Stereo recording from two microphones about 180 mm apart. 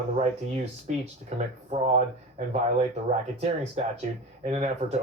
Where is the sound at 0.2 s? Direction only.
35° right (ahead or behind).